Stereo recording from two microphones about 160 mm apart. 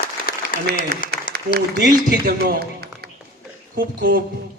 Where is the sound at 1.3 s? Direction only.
60° left (ahead or behind).